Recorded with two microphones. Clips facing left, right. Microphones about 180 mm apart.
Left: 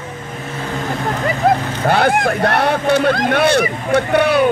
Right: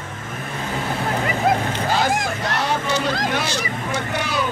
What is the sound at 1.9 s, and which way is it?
Speech, 60° left (ahead or behind).